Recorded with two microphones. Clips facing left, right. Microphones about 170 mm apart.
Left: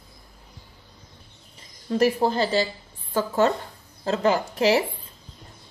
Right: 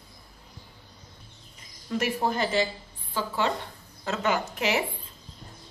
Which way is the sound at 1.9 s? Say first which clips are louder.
Left 6 dB; 35° left (ahead or behind).